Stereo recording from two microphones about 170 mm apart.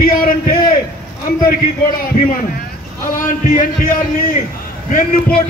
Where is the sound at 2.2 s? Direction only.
50° left (ahead or behind).